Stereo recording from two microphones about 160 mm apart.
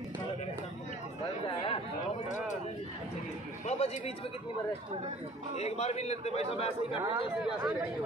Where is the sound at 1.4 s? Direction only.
35° left (ahead or behind).